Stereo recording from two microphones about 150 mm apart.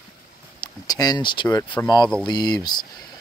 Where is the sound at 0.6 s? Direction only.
25° left (ahead or behind).